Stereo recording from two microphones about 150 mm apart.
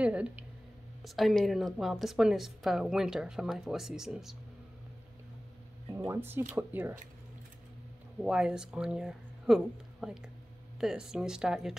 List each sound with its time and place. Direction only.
0.0 s a sound: 10° right (ahead or behind)
1.0 s a woman's voice: centre (ahead or behind)
5.9 s speech: 20° right (ahead or behind)
8.2 s a woman's voice: 5° right (ahead or behind)